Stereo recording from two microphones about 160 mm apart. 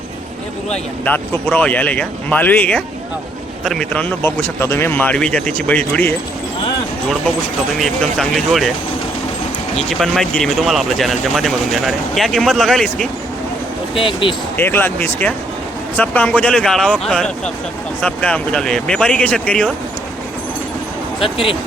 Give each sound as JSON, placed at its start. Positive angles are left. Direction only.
{"t": 0.7, "sound": "speech", "side_deg": 10}
{"t": 7.8, "sound": "speech", "side_deg": 0}
{"t": 9.7, "sound": "speech", "side_deg": 0}
{"t": 13.9, "sound": "speech", "side_deg": 35}
{"t": 14.5, "sound": "speech", "side_deg": 15}
{"t": 21.2, "sound": "speech", "side_deg": 35}